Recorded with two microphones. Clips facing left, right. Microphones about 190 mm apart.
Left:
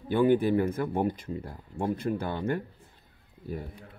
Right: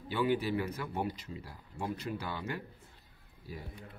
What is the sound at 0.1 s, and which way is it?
Speech, 50° left (ahead or behind).